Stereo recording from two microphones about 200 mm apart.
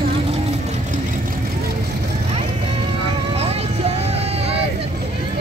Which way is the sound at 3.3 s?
30° right (ahead or behind).